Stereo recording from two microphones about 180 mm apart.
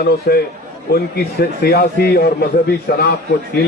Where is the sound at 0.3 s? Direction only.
60° left (ahead or behind).